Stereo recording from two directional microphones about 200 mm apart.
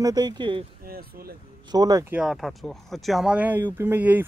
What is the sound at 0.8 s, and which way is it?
Speech, 50° right (ahead or behind).